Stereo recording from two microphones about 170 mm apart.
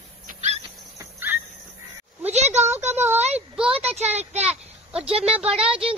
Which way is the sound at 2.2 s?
40° right (ahead or behind).